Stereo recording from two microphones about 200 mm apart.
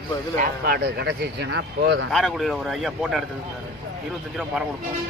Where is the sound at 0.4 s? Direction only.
50° right (ahead or behind).